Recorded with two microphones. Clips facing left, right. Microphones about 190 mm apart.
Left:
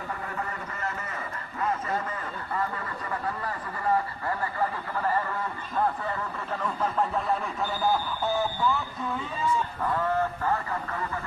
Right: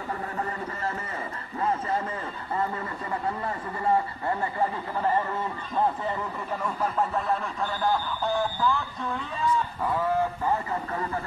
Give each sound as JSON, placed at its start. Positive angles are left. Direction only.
{"t": 4.3, "sound": "speech", "side_deg": -25}
{"t": 6.6, "sound": "speech", "side_deg": -5}
{"t": 9.8, "sound": "chicken", "side_deg": -10}